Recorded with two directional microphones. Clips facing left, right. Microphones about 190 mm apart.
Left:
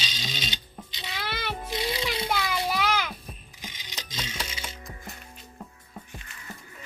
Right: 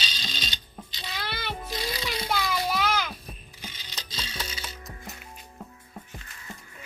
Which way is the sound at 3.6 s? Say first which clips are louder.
Left 1 dB; 15° left (ahead or behind).